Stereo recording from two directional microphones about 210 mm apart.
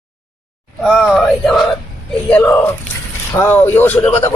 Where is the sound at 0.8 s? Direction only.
Centre (ahead or behind).